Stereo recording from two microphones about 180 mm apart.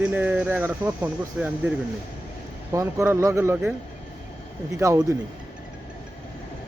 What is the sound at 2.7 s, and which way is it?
Speech, 15° right (ahead or behind).